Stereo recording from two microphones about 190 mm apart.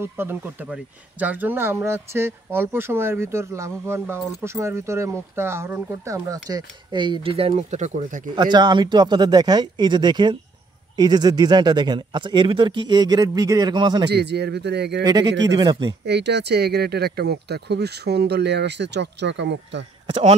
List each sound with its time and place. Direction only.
0.0 s speech: 10° right (ahead or behind); by 8.2 s 40° right (ahead or behind)
8.4 s speech: 25° right (ahead or behind)
14.1 s speech: 60° right (ahead or behind)
15.0 s speech: 20° right (ahead or behind)
16.1 s speech: 65° right (ahead or behind)